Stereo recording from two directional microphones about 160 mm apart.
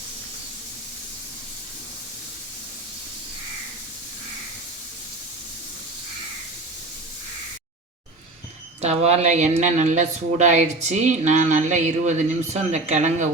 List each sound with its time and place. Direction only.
8.8 s speech: 40° right (ahead or behind)